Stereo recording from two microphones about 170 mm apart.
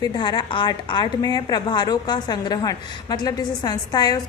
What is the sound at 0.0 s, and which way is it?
A woman's voice, 25° left (ahead or behind).